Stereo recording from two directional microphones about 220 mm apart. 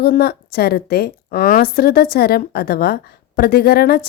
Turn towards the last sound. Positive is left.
turn(degrees=45)  # may be behind; listen again after turning